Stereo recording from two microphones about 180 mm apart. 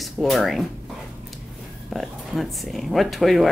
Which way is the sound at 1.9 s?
Centre (ahead or behind).